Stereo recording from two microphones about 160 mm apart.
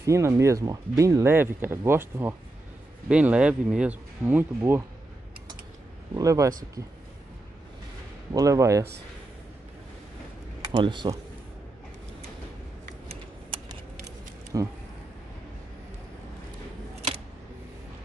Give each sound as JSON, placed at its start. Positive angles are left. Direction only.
{"t": 0.0, "sound": "speech", "side_deg": -15}
{"t": 6.1, "sound": "speech", "side_deg": -20}
{"t": 8.3, "sound": "speech", "side_deg": -20}
{"t": 10.7, "sound": "speech", "side_deg": -30}
{"t": 14.5, "sound": "speech", "side_deg": -20}